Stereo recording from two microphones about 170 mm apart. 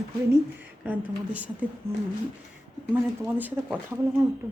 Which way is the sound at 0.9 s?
10° right (ahead or behind).